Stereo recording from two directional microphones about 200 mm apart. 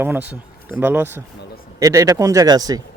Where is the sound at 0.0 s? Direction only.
10° right (ahead or behind).